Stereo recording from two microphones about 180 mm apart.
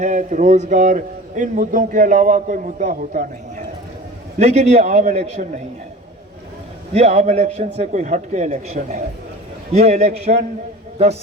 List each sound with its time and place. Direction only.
0.0 s a man's voice: 45° right (ahead or behind)
4.4 s a man's voice: 40° right (ahead or behind)
6.9 s a man's voice: 35° right (ahead or behind)